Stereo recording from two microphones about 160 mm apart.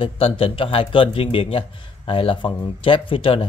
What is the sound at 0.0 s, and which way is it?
A man's voice, 35° left (ahead or behind).